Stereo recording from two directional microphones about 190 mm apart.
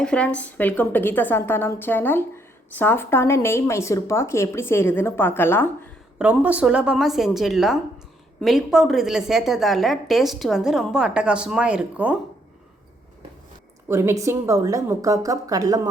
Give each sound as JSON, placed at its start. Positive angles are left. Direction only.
{"t": 0.0, "sound": "a woman's voice", "side_deg": 5}
{"t": 6.1, "sound": "a woman's voice", "side_deg": -5}
{"t": 13.8, "sound": "a woman's voice", "side_deg": -15}